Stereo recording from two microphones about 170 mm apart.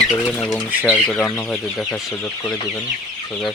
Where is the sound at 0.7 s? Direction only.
5° right (ahead or behind).